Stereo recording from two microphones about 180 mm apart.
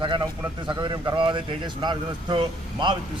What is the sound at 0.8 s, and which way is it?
Speech, 25° right (ahead or behind).